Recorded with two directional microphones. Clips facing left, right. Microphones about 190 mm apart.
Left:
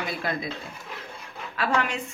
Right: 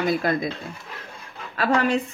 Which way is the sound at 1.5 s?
40° right (ahead or behind).